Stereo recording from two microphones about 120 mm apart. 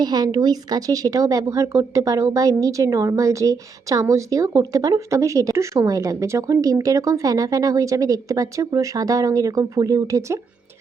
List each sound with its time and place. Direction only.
0.0 s a woman's voice: 35° right (ahead or behind)